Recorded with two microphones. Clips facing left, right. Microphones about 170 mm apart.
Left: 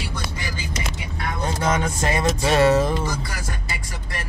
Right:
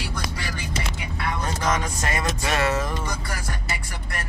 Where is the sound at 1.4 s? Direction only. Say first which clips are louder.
Left 4 dB; 25° left (ahead or behind).